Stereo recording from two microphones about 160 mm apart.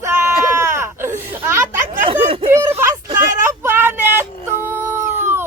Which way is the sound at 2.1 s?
35° right (ahead or behind).